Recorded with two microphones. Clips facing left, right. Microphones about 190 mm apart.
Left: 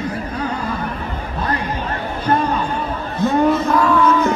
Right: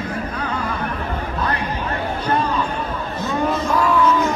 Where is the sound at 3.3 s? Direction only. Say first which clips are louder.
Left 4 dB; 55° left (ahead or behind).